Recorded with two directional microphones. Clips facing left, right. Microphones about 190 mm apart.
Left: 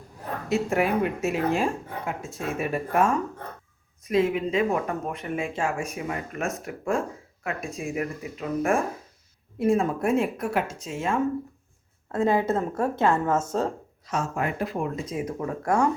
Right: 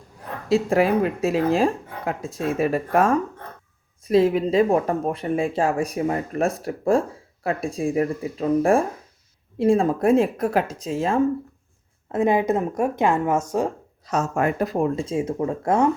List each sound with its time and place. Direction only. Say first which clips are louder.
0.4 s speech: right 5 dB; 35° right (ahead or behind)
12.1 s a woman's voice: right 3 dB; 15° right (ahead or behind)
14.1 s speech: right 6 dB; 45° right (ahead or behind); by 15.9 s 25° right (ahead or behind)